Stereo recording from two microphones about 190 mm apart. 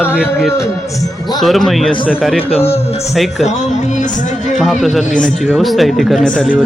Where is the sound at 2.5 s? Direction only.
30° left (ahead or behind).